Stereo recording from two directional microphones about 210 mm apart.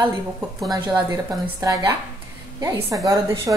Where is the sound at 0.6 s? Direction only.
20° right (ahead or behind).